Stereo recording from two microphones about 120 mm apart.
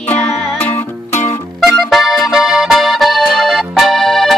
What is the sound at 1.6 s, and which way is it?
Accordion, centre (ahead or behind).